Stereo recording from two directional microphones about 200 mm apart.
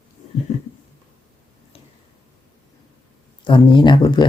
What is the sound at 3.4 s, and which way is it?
Speech, 25° left (ahead or behind).